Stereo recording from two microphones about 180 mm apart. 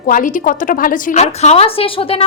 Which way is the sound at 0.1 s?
45° left (ahead or behind).